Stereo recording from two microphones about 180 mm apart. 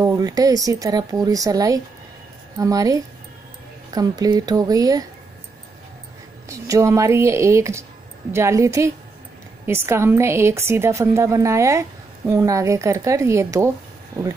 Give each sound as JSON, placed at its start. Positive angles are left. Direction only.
{"t": 0.0, "sound": "speech", "side_deg": -20}
{"t": 6.5, "sound": "a woman's voice", "side_deg": -15}